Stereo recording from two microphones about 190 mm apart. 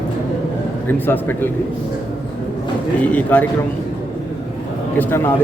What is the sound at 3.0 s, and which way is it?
Speech, 10° left (ahead or behind).